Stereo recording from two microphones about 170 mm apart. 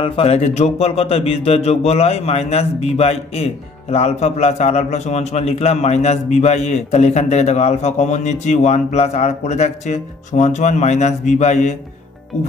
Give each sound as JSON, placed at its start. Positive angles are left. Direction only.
{"t": 0.0, "sound": "speech", "side_deg": 35}